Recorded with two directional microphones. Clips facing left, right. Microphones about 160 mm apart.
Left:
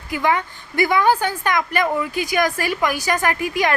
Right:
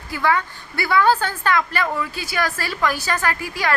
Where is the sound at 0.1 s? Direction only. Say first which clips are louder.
Left 1 dB; 20° left (ahead or behind).